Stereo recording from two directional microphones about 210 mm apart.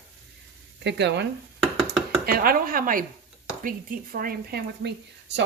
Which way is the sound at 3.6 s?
40° right (ahead or behind).